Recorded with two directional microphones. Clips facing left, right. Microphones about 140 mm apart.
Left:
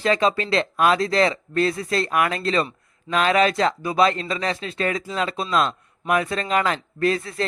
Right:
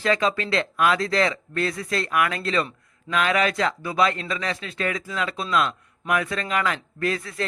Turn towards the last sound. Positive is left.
turn(degrees=30)  # may be behind; listen again after turning